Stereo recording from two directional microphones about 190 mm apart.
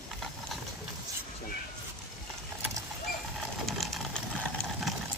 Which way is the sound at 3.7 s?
Centre (ahead or behind).